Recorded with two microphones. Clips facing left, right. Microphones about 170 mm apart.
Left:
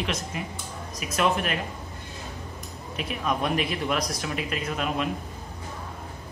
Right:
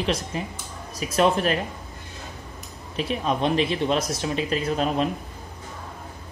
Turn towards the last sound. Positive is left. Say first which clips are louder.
# right 5 dB
turn(degrees=-30)  # may be behind; listen again after turning